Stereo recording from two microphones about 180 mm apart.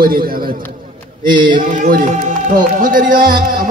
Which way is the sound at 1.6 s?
45° right (ahead or behind).